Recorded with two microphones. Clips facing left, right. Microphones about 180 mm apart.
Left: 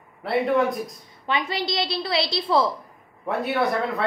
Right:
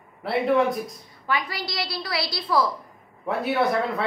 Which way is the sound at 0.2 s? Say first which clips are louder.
Even; centre (ahead or behind).